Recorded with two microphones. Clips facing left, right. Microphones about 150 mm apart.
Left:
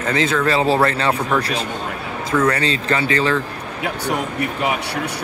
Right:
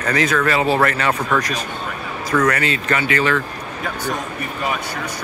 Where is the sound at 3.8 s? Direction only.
70° left (ahead or behind).